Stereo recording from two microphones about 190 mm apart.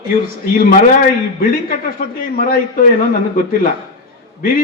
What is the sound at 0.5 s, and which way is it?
A man's voice, 45° left (ahead or behind).